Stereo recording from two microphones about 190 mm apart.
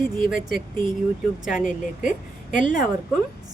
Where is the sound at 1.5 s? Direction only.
45° left (ahead or behind).